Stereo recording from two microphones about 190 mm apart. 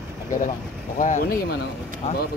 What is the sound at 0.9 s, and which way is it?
Speech, 40° left (ahead or behind).